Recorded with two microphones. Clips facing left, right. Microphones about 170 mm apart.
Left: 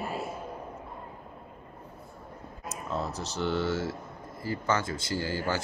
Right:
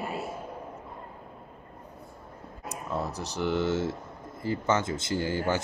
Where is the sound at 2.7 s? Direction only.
15° right (ahead or behind).